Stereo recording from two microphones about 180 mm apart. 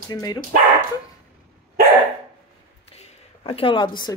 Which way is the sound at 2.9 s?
30° left (ahead or behind).